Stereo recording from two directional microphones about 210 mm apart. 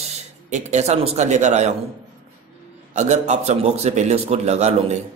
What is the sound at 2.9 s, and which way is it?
A man's voice, 30° right (ahead or behind).